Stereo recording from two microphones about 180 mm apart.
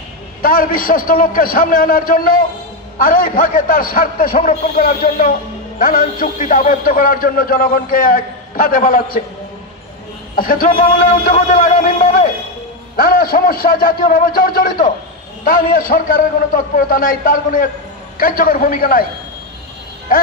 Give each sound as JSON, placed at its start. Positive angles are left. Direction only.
{"t": 0.4, "sound": "a man's voice", "side_deg": 50}
{"t": 10.3, "sound": "a man's voice", "side_deg": 50}